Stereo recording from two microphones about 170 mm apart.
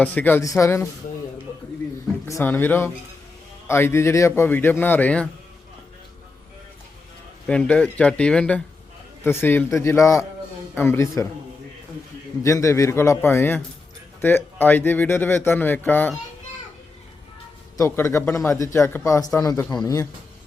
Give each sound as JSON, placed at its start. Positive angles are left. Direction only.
{"t": 0.0, "sound": "a man's voice", "side_deg": 10}
{"t": 2.2, "sound": "a man's voice", "side_deg": 15}
{"t": 7.4, "sound": "a man's voice", "side_deg": 5}
{"t": 12.4, "sound": "a man's voice", "side_deg": 20}
{"t": 17.7, "sound": "a man's voice", "side_deg": 15}